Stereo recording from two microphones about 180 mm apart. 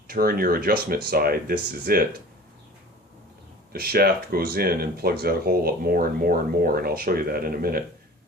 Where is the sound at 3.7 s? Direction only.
60° right (ahead or behind).